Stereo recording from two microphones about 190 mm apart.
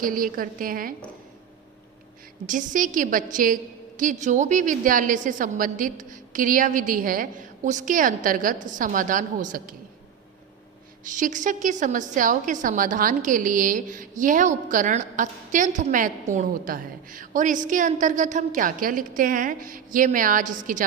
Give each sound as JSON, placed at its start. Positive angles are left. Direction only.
{"t": 0.0, "sound": "a woman's voice", "side_deg": -45}
{"t": 2.5, "sound": "a woman's voice", "side_deg": -45}
{"t": 11.0, "sound": "a woman's voice", "side_deg": -45}